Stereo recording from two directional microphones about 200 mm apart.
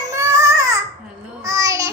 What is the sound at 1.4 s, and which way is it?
Child singing, 15° right (ahead or behind).